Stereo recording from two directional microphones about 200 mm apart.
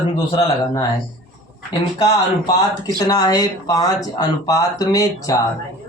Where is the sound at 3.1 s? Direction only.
20° left (ahead or behind).